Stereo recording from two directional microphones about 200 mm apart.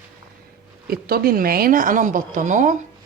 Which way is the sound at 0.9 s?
50° right (ahead or behind).